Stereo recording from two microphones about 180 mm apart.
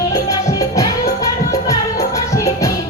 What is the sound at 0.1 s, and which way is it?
Music, 20° left (ahead or behind).